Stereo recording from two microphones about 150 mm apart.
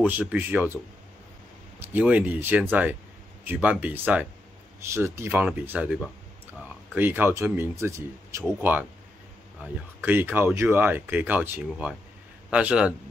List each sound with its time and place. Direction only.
0.2 s speech: 10° right (ahead or behind)
2.0 s speech: 10° right (ahead or behind)